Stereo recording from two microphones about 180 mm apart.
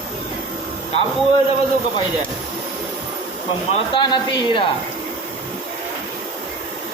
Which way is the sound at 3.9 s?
25° left (ahead or behind).